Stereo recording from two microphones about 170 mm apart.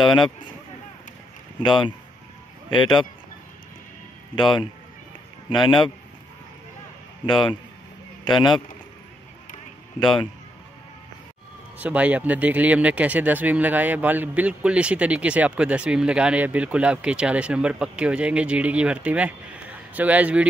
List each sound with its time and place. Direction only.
0.0 s speech: 25° left (ahead or behind)
1.6 s speech: 30° left (ahead or behind)
4.4 s speech: 30° left (ahead or behind)
7.2 s speech: 30° left (ahead or behind)
9.9 s speech: 30° left (ahead or behind)
11.8 s speech: 10° right (ahead or behind)